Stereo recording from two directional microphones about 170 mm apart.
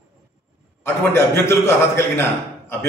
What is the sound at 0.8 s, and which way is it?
A man's voice, 15° left (ahead or behind).